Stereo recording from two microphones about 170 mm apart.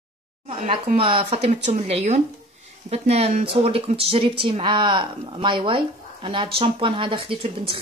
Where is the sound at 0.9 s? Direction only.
35° right (ahead or behind).